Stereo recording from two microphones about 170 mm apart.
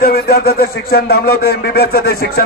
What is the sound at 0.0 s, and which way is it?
A man's voice, 65° left (ahead or behind).